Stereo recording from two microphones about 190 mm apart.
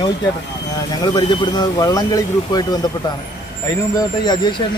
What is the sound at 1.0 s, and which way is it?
Speech, 25° left (ahead or behind).